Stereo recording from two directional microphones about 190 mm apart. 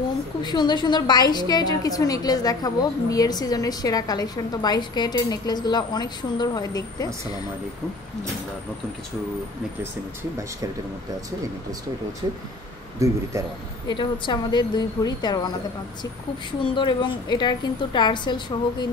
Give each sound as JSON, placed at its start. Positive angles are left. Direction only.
{"t": 0.4, "sound": "a woman's voice", "side_deg": 20}
{"t": 13.0, "sound": "a man's voice", "side_deg": -15}
{"t": 13.8, "sound": "a woman's voice", "side_deg": 25}
{"t": 16.7, "sound": "a woman's voice", "side_deg": 25}